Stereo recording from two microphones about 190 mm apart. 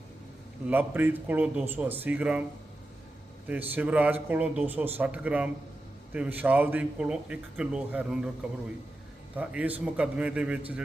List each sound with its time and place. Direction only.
0.7 s a man's voice: 10° right (ahead or behind)
3.5 s a man's voice: 10° right (ahead or behind)